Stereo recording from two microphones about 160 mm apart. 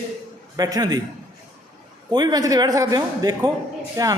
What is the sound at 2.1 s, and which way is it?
A man's voice, 25° right (ahead or behind).